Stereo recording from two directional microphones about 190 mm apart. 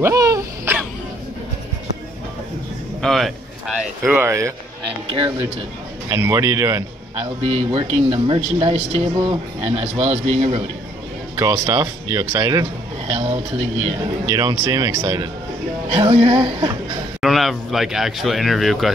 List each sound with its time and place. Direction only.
0.0 s a sound: 15° right (ahead or behind)
3.0 s speech: centre (ahead or behind); by 4.6 s 15° right (ahead or behind)
6.0 s speech: 15° right (ahead or behind)
7.2 s speech: 30° right (ahead or behind)
11.3 s speech: 20° right (ahead or behind)
14.2 s speech: 20° right (ahead or behind)
17.2 s speech: centre (ahead or behind)